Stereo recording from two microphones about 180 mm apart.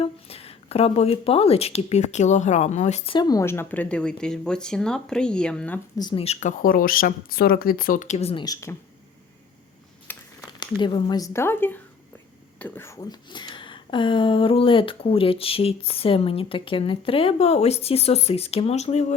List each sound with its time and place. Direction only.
0.0 s speech: 30° left (ahead or behind)
3.2 s a woman's voice: 20° left (ahead or behind)
6.0 s speech: 30° left (ahead or behind)
8.7 s speech: 10° left (ahead or behind)
10.1 s a sound: 10° left (ahead or behind)
10.6 s speech: 25° left (ahead or behind)